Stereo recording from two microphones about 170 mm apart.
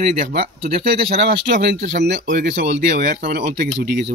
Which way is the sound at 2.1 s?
50° right (ahead or behind).